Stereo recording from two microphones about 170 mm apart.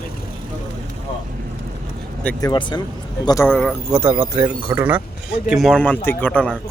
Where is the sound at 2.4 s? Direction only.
25° left (ahead or behind).